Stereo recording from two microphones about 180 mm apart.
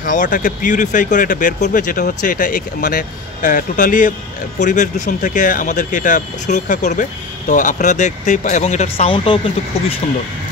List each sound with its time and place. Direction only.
0.0 s speech: 45° left (ahead or behind); by 9.4 s 30° left (ahead or behind)